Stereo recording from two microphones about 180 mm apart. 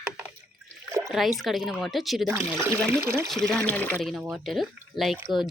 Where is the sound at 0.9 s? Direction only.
15° right (ahead or behind).